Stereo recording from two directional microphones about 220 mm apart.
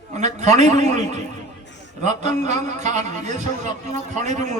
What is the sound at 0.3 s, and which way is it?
A man's voice, 30° right (ahead or behind).